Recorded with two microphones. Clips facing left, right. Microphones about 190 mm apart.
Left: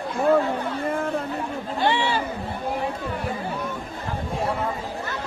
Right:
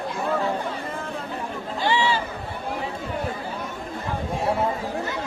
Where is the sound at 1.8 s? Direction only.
55° left (ahead or behind).